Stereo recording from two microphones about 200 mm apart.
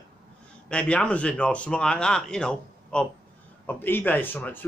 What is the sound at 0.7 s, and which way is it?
Speech, 5° left (ahead or behind).